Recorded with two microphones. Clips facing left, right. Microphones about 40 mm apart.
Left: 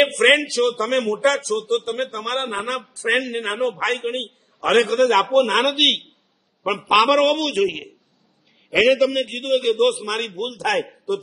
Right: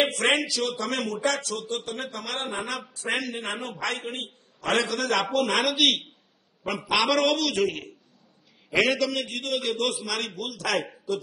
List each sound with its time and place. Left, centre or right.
0.0 s a man's voice: left
6.6 s a man's voice: left
8.7 s a man's voice: left